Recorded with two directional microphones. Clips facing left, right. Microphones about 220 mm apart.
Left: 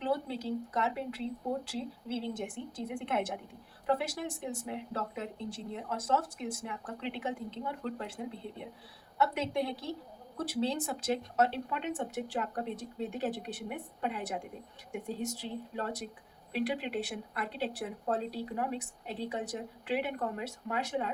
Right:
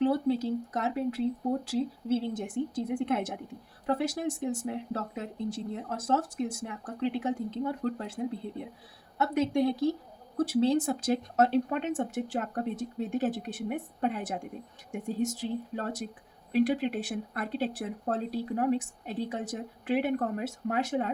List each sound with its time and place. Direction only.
0.0 s speech: 45° right (ahead or behind)